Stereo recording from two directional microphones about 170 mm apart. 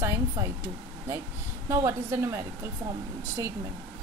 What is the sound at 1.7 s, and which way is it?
Speech, 15° right (ahead or behind).